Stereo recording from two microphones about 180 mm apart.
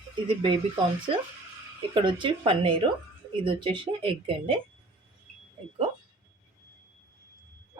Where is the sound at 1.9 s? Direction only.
25° right (ahead or behind).